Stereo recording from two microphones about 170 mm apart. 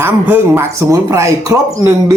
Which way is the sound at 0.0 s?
15° right (ahead or behind).